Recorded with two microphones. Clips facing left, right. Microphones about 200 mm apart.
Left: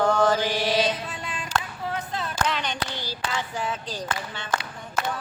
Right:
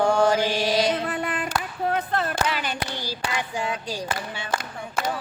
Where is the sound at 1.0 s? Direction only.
60° right (ahead or behind).